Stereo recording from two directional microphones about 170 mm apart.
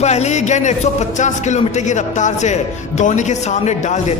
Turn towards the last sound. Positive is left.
turn(degrees=45)  # may be behind; listen again after turning